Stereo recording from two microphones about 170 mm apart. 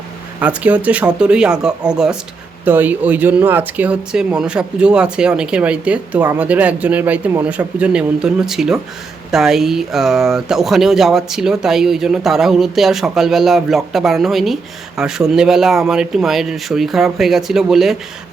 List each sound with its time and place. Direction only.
0.3 s speech: 10° right (ahead or behind)